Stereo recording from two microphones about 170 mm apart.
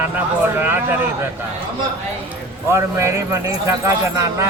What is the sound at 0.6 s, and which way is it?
Speech, 10° right (ahead or behind).